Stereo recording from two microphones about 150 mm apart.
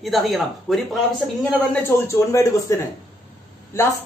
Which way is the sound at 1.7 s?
20° left (ahead or behind).